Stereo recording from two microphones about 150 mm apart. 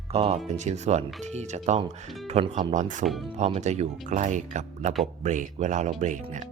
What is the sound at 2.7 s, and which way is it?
Speech, 55° right (ahead or behind).